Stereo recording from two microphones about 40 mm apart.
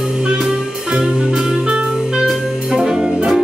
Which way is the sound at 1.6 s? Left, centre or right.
Right.